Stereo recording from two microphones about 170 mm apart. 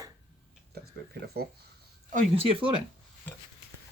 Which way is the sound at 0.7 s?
65° right (ahead or behind).